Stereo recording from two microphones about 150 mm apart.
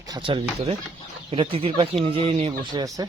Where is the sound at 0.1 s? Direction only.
35° right (ahead or behind).